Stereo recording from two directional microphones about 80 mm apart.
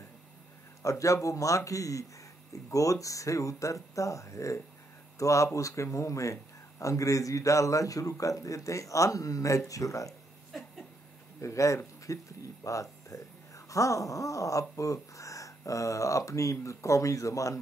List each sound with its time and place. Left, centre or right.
0.8 s speech: left
10.5 s a sound: centre
11.4 s a man's voice: left